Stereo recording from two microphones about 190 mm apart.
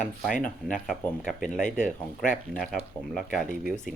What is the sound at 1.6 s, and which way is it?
Speech, 40° left (ahead or behind).